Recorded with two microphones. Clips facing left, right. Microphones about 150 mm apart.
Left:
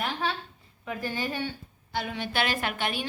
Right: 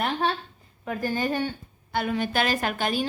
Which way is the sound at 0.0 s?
50° right (ahead or behind).